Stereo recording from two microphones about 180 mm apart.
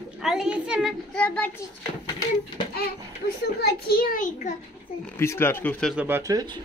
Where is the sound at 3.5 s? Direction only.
60° left (ahead or behind).